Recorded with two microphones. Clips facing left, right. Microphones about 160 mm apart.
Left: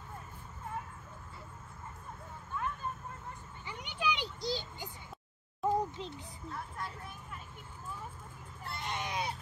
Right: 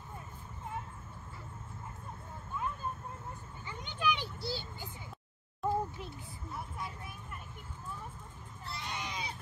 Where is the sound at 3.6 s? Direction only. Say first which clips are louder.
Right 1 dB; 15° left (ahead or behind).